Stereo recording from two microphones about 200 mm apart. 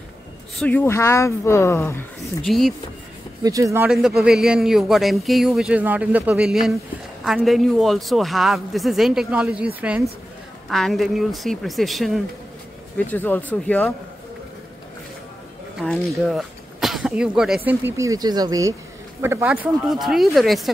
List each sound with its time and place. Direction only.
0.6 s speech: 10° left (ahead or behind)
3.4 s speech: 15° right (ahead or behind)
3.9 s a man's voice: centre (ahead or behind)
15.8 s a man's voice: centre (ahead or behind)